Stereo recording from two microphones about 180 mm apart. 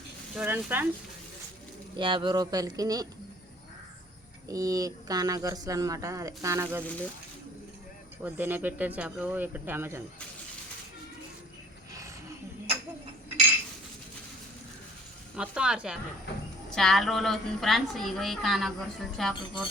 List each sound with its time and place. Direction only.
0.3 s speech: 10° right (ahead or behind)
2.0 s speech: 30° right (ahead or behind)
4.4 s speech: 20° right (ahead or behind)
8.2 s speech: 10° right (ahead or behind)
15.4 s a woman's voice: 5° right (ahead or behind)